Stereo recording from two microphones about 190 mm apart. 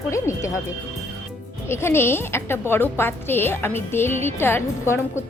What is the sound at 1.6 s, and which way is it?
A woman's voice, 15° left (ahead or behind).